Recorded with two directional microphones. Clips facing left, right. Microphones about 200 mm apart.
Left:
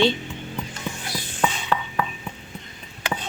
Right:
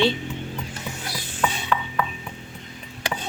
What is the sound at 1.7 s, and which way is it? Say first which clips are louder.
Music: right 1 dB; 35° left (ahead or behind).